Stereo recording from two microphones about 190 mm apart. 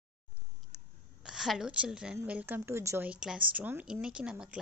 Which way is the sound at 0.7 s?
Centre (ahead or behind).